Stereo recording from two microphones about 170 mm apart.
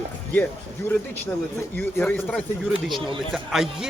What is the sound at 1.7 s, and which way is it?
A man's voice, 10° left (ahead or behind).